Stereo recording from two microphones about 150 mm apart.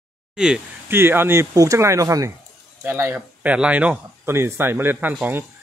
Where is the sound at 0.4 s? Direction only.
10° right (ahead or behind).